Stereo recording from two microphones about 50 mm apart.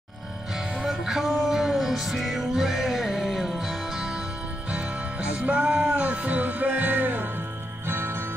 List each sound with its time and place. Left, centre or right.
0.7 s music: centre
4.6 s music: right
7.8 s music: right